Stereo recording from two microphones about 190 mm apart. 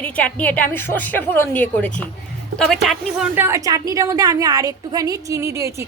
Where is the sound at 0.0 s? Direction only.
5° left (ahead or behind).